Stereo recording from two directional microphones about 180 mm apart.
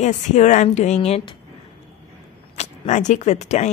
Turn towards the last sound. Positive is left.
turn(degrees=40)  # may be behind; listen again after turning